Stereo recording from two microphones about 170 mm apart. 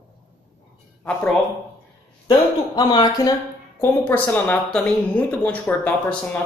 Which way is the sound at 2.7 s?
25° left (ahead or behind).